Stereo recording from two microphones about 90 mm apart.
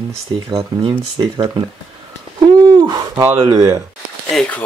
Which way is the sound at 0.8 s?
60° right (ahead or behind).